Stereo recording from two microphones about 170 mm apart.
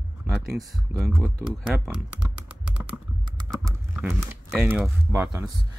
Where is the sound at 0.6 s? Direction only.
15° right (ahead or behind).